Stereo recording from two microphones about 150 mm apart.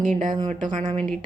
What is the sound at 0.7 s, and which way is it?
Speech, 55° right (ahead or behind).